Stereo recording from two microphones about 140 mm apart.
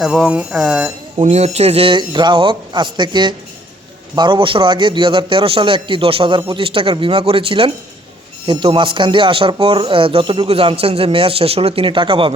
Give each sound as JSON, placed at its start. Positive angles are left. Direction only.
{"t": 0.0, "sound": "speech", "side_deg": -5}
{"t": 1.2, "sound": "speech", "side_deg": -50}